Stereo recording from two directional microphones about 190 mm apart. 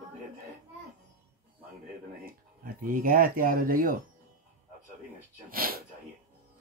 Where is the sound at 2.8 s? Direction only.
45° right (ahead or behind).